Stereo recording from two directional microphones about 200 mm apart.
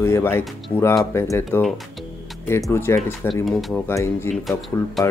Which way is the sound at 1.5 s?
Centre (ahead or behind).